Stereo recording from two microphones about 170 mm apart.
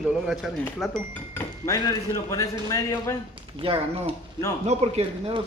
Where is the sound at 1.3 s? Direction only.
20° left (ahead or behind).